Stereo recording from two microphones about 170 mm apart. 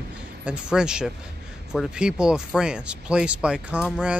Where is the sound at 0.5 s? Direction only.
5° right (ahead or behind).